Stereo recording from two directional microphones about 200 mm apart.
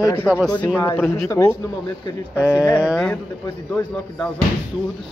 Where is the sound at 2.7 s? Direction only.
5° right (ahead or behind).